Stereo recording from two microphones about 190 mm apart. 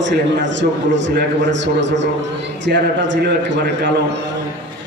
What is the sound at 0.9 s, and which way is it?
A man's voice, 70° right (ahead or behind).